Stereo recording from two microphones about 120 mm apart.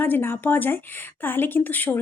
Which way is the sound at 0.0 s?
15° left (ahead or behind).